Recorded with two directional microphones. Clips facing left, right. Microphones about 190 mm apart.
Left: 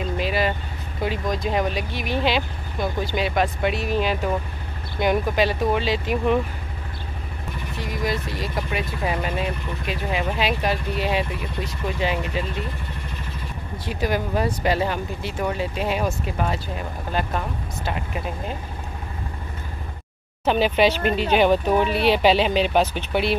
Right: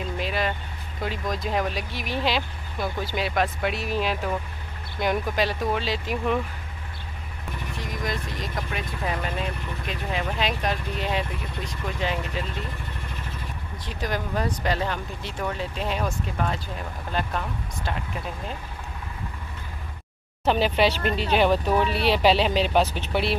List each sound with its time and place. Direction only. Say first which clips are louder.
0.2 s vehicle: left 4 dB; 5° left (ahead or behind)
1.0 s speech: left 4 dB; centre (ahead or behind)
7.8 s speech: left 5 dB; 5° left (ahead or behind)
13.8 s speech: left 5 dB; 10° left (ahead or behind)
20.4 s speech: left 3 dB; centre (ahead or behind)